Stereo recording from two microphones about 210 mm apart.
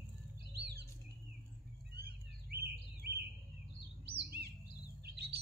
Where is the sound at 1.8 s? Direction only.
50° right (ahead or behind).